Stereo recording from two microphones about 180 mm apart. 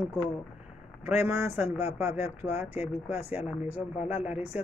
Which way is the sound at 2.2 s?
35° left (ahead or behind).